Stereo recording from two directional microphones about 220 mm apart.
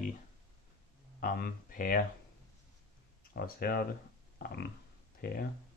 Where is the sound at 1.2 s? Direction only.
40° left (ahead or behind).